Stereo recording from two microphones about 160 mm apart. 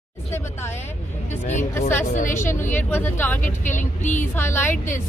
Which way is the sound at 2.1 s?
50° left (ahead or behind).